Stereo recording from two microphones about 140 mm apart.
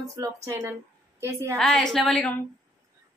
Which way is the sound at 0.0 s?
25° right (ahead or behind).